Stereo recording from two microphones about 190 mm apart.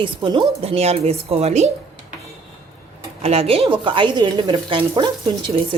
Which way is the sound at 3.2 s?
30° right (ahead or behind).